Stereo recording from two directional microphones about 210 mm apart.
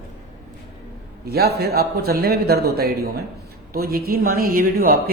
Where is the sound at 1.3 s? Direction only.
50° right (ahead or behind).